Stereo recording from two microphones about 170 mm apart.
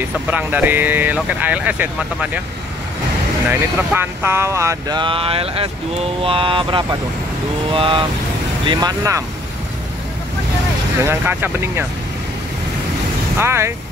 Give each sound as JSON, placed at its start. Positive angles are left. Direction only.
{"t": 0.3, "sound": "speech", "side_deg": -10}
{"t": 3.4, "sound": "speech", "side_deg": -10}
{"t": 6.2, "sound": "vehicle", "side_deg": -30}
{"t": 8.6, "sound": "speech", "side_deg": -20}
{"t": 11.1, "sound": "speech", "side_deg": -15}
{"t": 13.4, "sound": "speech", "side_deg": -15}